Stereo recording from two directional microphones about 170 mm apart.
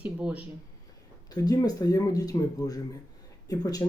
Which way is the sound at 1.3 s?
20° left (ahead or behind).